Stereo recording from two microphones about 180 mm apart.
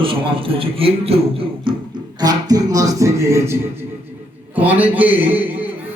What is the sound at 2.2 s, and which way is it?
Speech, 20° right (ahead or behind).